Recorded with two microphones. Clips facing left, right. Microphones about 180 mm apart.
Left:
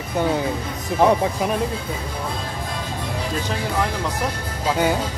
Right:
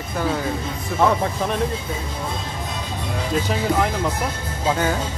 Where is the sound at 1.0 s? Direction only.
15° left (ahead or behind).